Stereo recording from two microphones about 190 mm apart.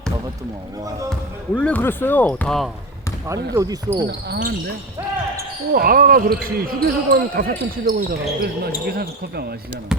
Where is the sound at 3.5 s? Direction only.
20° right (ahead or behind).